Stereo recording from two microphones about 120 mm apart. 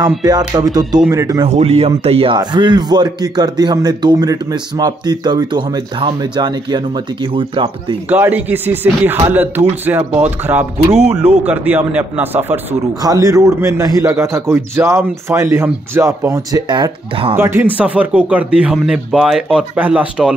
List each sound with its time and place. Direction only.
0.2 s a man's voice: 35° right (ahead or behind)
1.4 s speech: 60° right (ahead or behind)
2.3 s a man's voice: 40° right (ahead or behind)
8.1 s speech: 15° right (ahead or behind)
13.0 s a man's voice: 30° right (ahead or behind); by 17.4 s 45° right (ahead or behind)
17.4 s a man's voice: 20° right (ahead or behind)